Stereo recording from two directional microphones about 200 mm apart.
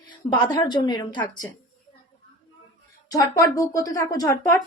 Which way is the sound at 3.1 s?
15° left (ahead or behind).